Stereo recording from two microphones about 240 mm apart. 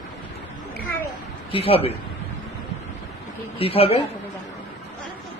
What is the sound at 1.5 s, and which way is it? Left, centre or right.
Speech, left.